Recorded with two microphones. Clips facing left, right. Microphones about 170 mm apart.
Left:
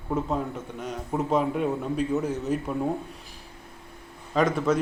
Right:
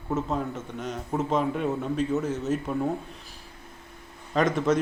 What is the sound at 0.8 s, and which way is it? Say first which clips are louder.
Speech: even; 10° left (ahead or behind).